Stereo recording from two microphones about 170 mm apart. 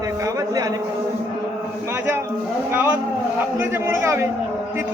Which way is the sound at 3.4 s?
15° right (ahead or behind).